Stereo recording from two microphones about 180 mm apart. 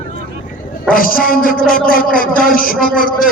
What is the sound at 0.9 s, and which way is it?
A man's voice, 50° left (ahead or behind).